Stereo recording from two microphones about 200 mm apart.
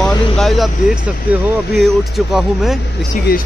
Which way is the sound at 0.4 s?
Centre (ahead or behind).